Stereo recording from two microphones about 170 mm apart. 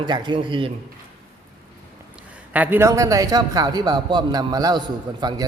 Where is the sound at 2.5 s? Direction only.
10° right (ahead or behind).